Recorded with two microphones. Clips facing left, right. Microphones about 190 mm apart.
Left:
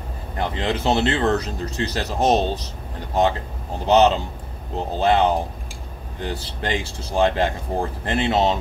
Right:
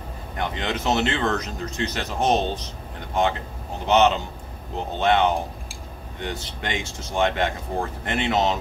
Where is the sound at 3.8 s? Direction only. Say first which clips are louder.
Left 3 dB; 35° left (ahead or behind).